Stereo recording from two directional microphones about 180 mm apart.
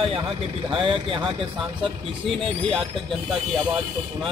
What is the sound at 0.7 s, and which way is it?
Speech, 30° right (ahead or behind).